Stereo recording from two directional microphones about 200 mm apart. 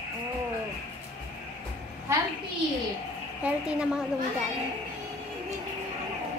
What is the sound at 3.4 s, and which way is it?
Speech, 5° right (ahead or behind).